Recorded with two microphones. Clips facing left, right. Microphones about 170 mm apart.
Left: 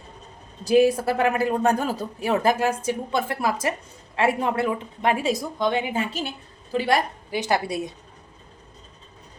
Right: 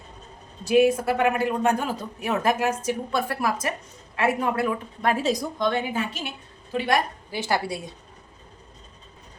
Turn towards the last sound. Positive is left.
turn(degrees=20)  # may be behind; listen again after turning